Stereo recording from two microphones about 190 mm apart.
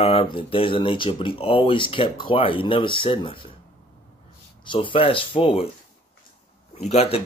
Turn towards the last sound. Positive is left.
turn(degrees=35)  # may be behind; listen again after turning